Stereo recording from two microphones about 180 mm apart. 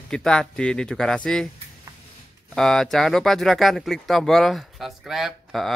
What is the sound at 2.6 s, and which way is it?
Speech, centre (ahead or behind).